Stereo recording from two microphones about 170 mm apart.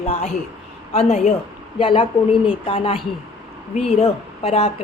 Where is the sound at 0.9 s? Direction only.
40° left (ahead or behind).